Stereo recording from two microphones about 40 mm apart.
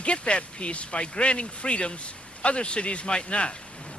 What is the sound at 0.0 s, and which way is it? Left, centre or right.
Speech, left.